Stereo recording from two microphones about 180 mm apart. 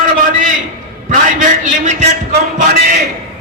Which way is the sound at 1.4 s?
45° right (ahead or behind).